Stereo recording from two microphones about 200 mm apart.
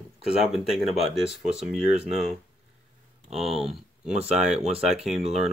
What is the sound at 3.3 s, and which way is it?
Speech, centre (ahead or behind).